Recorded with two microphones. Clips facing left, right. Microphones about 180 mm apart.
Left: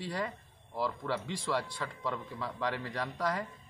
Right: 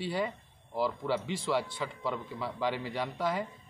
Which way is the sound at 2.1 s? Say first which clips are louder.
Right 1 dB; 5° right (ahead or behind).